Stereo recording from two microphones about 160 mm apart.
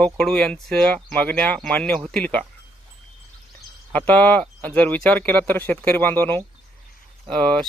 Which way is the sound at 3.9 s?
10° left (ahead or behind).